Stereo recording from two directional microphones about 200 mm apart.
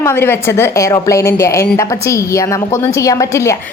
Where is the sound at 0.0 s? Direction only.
10° left (ahead or behind).